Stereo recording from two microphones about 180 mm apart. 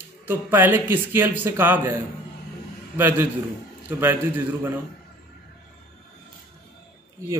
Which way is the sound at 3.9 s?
10° right (ahead or behind).